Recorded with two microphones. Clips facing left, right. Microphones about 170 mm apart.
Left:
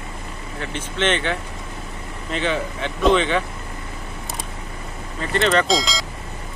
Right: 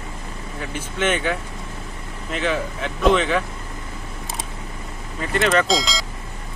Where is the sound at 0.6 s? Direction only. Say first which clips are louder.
Left 1 dB; 10° right (ahead or behind).